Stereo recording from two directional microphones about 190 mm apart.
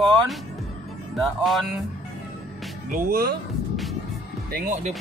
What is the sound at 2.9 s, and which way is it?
Speech, 55° right (ahead or behind).